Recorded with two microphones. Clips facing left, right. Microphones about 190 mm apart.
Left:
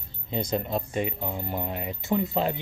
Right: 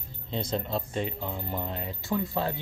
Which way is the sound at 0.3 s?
15° left (ahead or behind).